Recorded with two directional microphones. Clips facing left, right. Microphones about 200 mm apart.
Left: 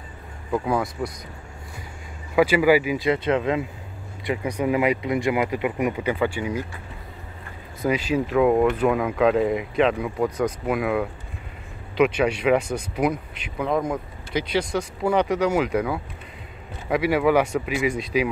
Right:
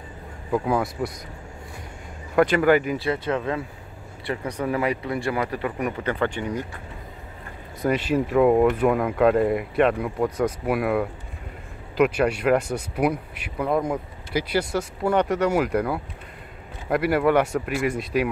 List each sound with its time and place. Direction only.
0.5 s speech: centre (ahead or behind)
2.3 s speech: 5° left (ahead or behind)
3.1 s speech: 20° left (ahead or behind)
7.8 s speech: centre (ahead or behind)